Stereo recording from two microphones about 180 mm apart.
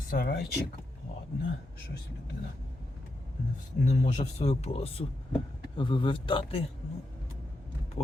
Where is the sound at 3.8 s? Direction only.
40° left (ahead or behind).